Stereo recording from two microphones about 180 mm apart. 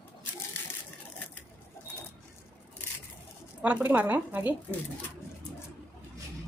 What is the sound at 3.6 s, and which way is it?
Speech, 10° right (ahead or behind).